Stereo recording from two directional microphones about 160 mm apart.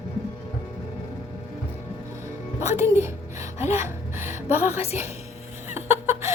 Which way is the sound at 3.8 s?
15° right (ahead or behind).